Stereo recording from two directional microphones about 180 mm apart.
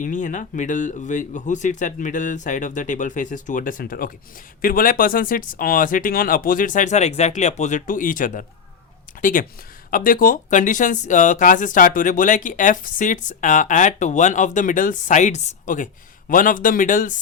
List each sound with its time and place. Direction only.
0.0 s speech: 45° left (ahead or behind)